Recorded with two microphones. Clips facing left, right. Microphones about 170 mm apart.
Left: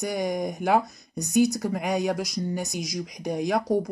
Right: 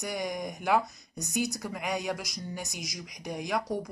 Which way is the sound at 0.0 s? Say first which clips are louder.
Left 7 dB; 30° left (ahead or behind).